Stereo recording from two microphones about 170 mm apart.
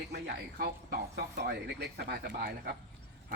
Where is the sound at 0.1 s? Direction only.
70° right (ahead or behind).